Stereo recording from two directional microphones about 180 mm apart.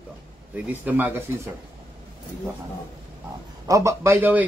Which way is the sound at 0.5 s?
10° right (ahead or behind).